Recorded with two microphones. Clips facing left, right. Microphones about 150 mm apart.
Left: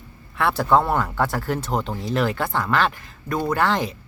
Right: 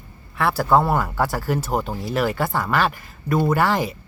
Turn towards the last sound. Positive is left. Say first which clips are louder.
# right 2 dB
turn(degrees=-5)  # may be behind; listen again after turning